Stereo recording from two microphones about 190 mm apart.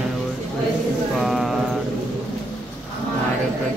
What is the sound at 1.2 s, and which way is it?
Mantra, centre (ahead or behind).